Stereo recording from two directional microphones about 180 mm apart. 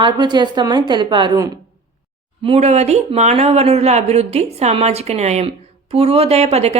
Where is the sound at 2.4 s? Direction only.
35° right (ahead or behind).